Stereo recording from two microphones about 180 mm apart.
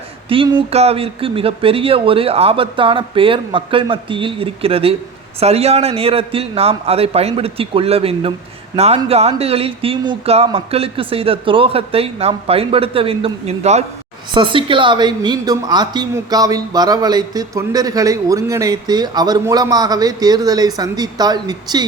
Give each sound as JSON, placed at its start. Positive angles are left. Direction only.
{"t": 0.3, "sound": "a woman's voice", "side_deg": -30}